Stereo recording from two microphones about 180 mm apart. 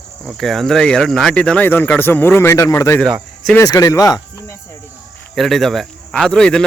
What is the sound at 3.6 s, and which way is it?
Speech, 20° left (ahead or behind).